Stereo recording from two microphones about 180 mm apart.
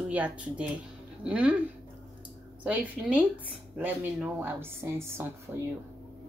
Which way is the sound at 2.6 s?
10° right (ahead or behind).